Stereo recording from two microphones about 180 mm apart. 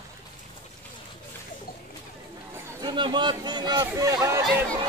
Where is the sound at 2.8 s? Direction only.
25° right (ahead or behind).